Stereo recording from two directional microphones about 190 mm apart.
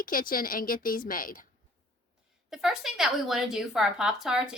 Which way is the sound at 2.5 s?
Centre (ahead or behind).